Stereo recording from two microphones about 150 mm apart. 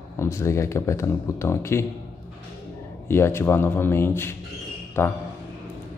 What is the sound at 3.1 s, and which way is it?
Speech, 15° left (ahead or behind).